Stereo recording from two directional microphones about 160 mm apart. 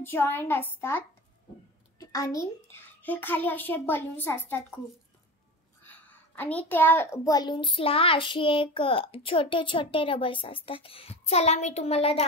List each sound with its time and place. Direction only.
0.0 s a child's voice: 15° left (ahead or behind)
5.9 s a woman's voice: 10° left (ahead or behind); by 12.3 s 40° left (ahead or behind)